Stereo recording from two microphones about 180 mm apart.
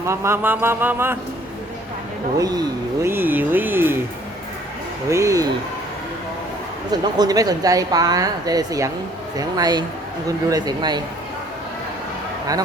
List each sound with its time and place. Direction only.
0.0 s speech: 15° right (ahead or behind)
2.4 s speech: 20° right (ahead or behind)
5.0 s speech: 15° right (ahead or behind)
7.2 s speech: 20° right (ahead or behind)